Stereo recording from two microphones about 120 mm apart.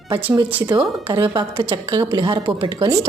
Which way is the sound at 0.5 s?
15° right (ahead or behind).